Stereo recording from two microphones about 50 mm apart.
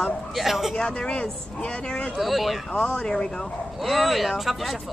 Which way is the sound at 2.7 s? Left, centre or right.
Centre.